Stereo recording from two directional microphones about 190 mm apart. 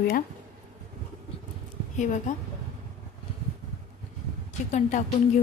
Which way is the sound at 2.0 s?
40° left (ahead or behind).